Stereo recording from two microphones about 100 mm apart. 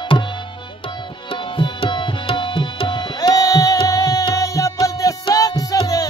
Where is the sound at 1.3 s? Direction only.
55° left (ahead or behind).